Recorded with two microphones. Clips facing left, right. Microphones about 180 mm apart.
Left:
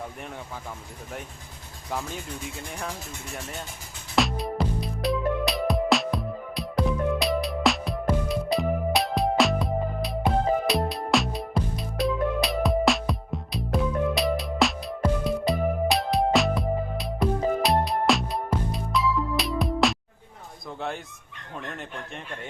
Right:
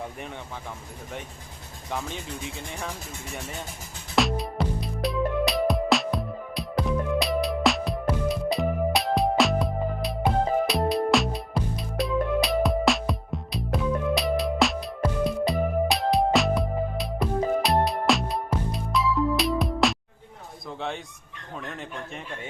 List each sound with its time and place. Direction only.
4.1 s music: centre (ahead or behind)
20.7 s bow-wow: centre (ahead or behind)
21.5 s speech: centre (ahead or behind)